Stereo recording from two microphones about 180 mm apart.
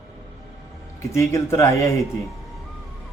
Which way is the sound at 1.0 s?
15° left (ahead or behind).